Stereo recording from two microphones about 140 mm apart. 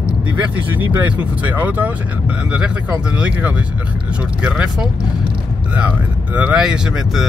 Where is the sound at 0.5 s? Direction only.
15° right (ahead or behind).